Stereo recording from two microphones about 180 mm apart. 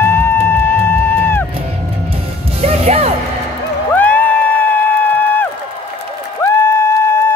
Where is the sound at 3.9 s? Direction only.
10° left (ahead or behind).